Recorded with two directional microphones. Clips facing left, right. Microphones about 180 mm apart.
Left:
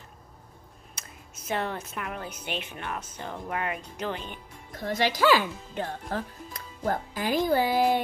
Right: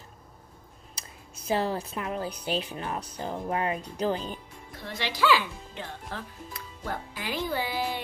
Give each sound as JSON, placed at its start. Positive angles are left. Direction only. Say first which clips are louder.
{"t": 0.9, "sound": "speech", "louder": "right 1 dB", "side_deg": -35}
{"t": 4.7, "sound": "speech", "louder": "left 6 dB", "side_deg": 45}